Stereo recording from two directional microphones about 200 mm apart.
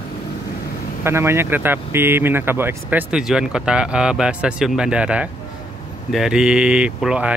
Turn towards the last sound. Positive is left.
turn(degrees=-5)  # may be behind; listen again after turning